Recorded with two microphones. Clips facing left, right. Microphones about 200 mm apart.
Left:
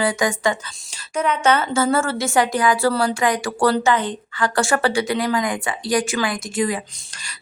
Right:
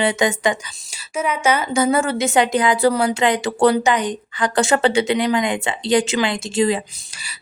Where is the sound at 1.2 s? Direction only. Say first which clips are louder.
Left 1 dB; 10° right (ahead or behind); by 6.8 s 25° right (ahead or behind).